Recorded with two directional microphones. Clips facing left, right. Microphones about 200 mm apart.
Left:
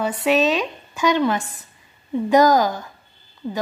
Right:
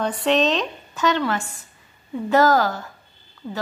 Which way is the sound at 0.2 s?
10° left (ahead or behind).